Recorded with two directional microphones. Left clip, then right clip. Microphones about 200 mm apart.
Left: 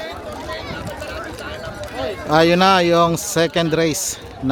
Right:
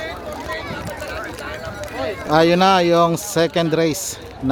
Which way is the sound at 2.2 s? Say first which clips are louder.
Even; centre (ahead or behind).